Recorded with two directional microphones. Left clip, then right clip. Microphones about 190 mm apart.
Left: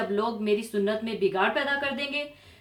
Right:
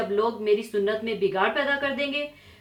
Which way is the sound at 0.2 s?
35° left (ahead or behind).